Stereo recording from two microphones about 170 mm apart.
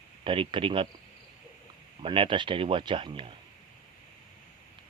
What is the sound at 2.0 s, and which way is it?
A man's voice, 30° right (ahead or behind).